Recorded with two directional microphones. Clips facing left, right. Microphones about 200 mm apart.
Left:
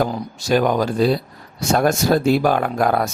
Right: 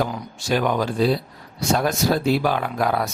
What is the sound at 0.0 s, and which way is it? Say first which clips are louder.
Speech: left 4 dB; 40° left (ahead or behind).